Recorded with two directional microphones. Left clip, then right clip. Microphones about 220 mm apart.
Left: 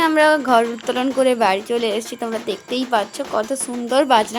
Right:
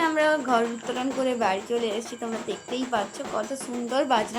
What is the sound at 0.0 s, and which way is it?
A woman's voice, 45° left (ahead or behind).